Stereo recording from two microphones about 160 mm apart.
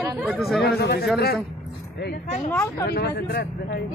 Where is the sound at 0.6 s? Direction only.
90° left.